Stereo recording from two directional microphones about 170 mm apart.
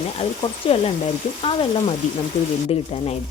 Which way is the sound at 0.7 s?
35° left (ahead or behind).